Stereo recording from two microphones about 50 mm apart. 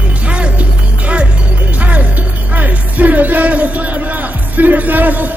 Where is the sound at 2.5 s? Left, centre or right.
Right.